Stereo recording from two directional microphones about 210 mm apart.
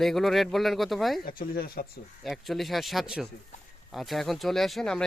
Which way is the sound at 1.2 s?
40° left (ahead or behind).